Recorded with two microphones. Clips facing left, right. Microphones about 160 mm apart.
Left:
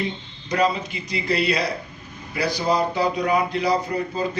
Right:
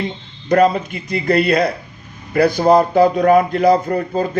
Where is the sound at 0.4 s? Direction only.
50° right (ahead or behind).